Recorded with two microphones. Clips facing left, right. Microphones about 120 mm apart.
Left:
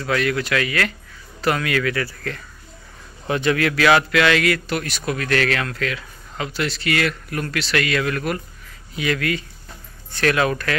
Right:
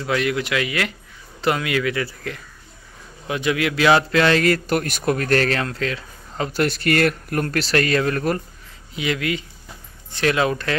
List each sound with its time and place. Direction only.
0.0 s speech: 20° right (ahead or behind); by 8.4 s 35° right (ahead or behind)
8.9 s speech: 20° right (ahead or behind)